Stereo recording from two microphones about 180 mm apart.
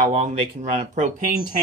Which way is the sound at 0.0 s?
40° right (ahead or behind).